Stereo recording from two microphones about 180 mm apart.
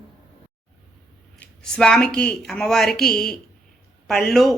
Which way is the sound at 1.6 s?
5° left (ahead or behind).